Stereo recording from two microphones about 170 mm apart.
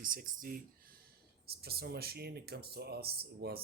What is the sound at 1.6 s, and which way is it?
Speech, 65° right (ahead or behind).